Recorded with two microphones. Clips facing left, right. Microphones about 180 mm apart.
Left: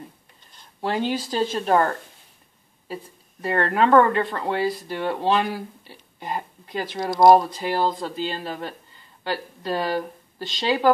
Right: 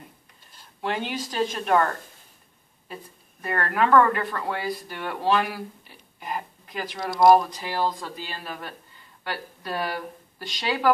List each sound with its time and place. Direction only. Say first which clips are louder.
0.7 s speech: left 4 dB; 35° left (ahead or behind)
2.9 s speech: left 6 dB; 25° left (ahead or behind)